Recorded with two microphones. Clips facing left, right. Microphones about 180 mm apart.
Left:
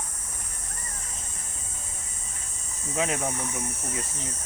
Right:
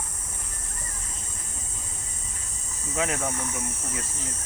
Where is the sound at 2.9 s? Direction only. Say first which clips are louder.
Even; 20° left (ahead or behind).